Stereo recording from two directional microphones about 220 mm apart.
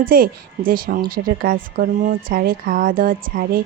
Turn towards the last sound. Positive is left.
turn(degrees=-40)  # may be behind; listen again after turning